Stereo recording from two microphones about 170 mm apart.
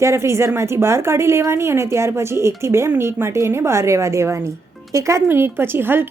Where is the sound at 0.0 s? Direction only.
15° right (ahead or behind).